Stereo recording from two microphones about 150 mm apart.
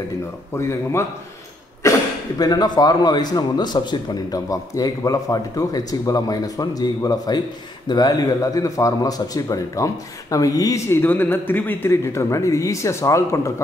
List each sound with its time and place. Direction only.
0.6 s a man's voice: 20° left (ahead or behind)